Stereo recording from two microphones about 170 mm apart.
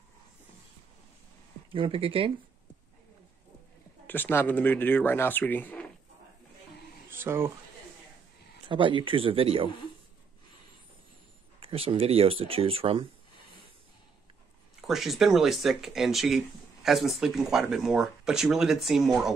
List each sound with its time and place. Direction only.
1.7 s speech: 30° right (ahead or behind)
4.1 s speech: 10° left (ahead or behind)
7.1 s speech: 15° right (ahead or behind)
8.6 s speech: 30° right (ahead or behind)
11.6 s speech: 35° right (ahead or behind)
14.8 s speech: centre (ahead or behind)